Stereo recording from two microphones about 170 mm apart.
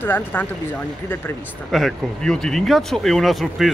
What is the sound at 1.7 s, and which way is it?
Speech, centre (ahead or behind).